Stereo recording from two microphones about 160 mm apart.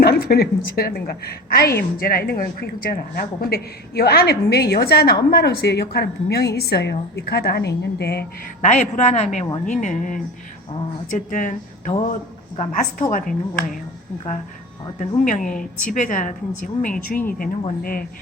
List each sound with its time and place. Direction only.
0.0 s a woman's voice: 80° left
8.6 s a woman's voice: 45° left (ahead or behind)
9.8 s a woman's voice: 55° left (ahead or behind)
14.9 s a woman's voice: 50° left (ahead or behind)